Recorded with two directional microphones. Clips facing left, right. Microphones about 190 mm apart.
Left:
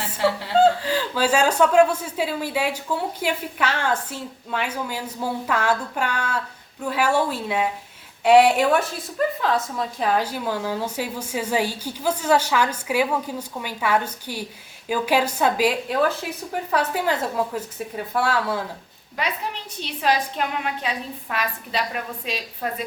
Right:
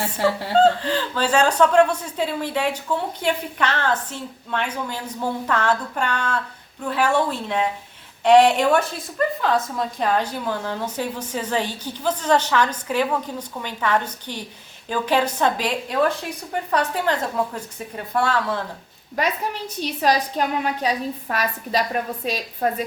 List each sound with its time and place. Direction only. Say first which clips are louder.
0.6 s a woman's voice: even; 10° left (ahead or behind)
19.8 s a woman's voice: right 2 dB; 40° right (ahead or behind)